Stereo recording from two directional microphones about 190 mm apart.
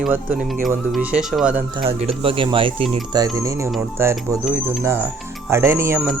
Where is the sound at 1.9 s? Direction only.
30° right (ahead or behind).